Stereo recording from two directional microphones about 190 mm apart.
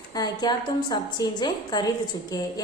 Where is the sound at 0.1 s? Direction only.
20° left (ahead or behind).